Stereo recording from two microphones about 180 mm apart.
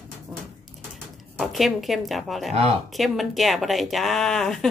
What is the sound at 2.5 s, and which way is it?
Speech, 35° right (ahead or behind).